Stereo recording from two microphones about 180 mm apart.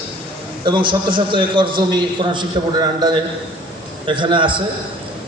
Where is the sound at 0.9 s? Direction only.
25° right (ahead or behind).